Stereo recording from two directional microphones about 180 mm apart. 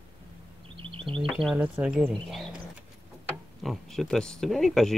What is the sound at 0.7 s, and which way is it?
Music, 30° right (ahead or behind).